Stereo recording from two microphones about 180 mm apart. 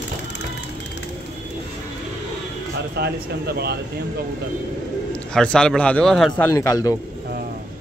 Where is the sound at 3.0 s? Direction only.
60° right (ahead or behind).